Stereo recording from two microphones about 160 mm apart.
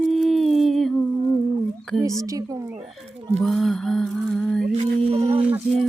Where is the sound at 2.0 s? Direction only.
20° right (ahead or behind).